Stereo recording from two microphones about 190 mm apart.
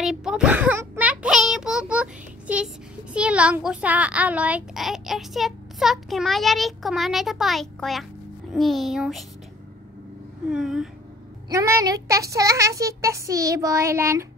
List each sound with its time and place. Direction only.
0.0 s child singing: 5° right (ahead or behind)
8.5 s a child's voice: centre (ahead or behind)
10.5 s a child's voice: 5° right (ahead or behind)
11.4 s speech: 15° right (ahead or behind)